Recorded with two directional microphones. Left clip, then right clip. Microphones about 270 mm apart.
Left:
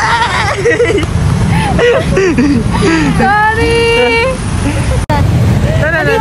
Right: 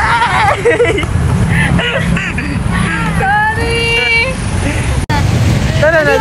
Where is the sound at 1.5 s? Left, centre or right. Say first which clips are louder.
Left 5 dB; centre.